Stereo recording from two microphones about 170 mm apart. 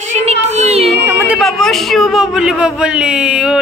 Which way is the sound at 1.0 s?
15° right (ahead or behind).